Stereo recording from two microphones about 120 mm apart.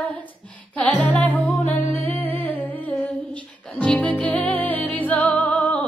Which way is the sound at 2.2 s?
15° left (ahead or behind).